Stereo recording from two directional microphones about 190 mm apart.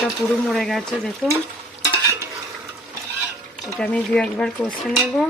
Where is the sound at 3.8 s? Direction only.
5° left (ahead or behind).